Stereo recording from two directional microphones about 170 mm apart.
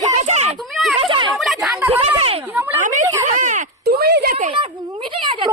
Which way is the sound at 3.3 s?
45° right (ahead or behind).